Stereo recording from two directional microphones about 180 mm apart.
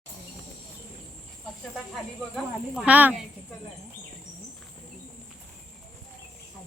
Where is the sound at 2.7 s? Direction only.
5° right (ahead or behind).